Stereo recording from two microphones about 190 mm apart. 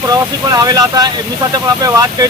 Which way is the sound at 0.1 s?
20° right (ahead or behind).